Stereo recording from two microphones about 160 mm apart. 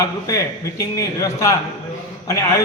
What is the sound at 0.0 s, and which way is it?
A man's voice, 20° left (ahead or behind).